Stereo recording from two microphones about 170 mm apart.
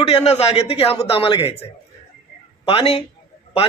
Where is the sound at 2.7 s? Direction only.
35° left (ahead or behind).